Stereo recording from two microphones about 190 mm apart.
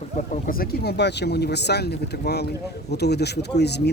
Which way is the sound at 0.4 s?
50° left (ahead or behind).